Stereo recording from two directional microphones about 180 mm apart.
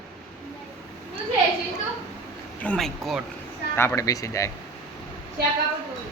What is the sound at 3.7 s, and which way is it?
Speech, 15° left (ahead or behind).